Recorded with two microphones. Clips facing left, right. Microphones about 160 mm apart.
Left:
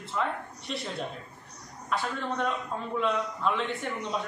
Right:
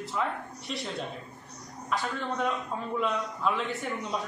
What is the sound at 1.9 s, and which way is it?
A man's voice, centre (ahead or behind).